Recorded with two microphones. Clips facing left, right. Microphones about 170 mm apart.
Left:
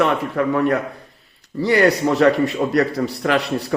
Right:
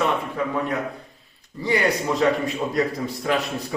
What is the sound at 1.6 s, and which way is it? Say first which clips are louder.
A man's voice: left 6 dB; 75° left (ahead or behind).